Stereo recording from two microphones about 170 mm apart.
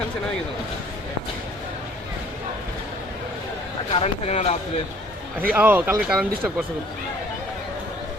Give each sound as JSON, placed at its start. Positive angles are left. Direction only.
{"t": 3.9, "sound": "speech", "side_deg": 40}
{"t": 5.5, "sound": "speech", "side_deg": -10}